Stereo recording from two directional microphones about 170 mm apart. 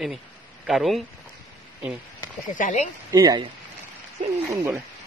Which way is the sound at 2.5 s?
50° left (ahead or behind).